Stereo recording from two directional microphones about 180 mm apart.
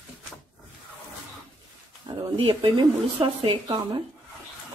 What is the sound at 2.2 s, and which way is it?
Speech, 30° right (ahead or behind).